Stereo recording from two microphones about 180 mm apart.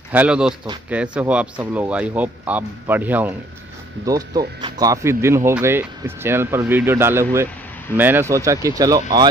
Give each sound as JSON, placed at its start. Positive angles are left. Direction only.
{"t": 0.1, "sound": "speech", "side_deg": -5}
{"t": 4.0, "sound": "speech", "side_deg": -20}